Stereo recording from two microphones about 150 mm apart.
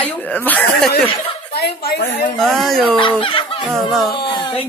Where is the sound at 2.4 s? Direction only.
Centre (ahead or behind).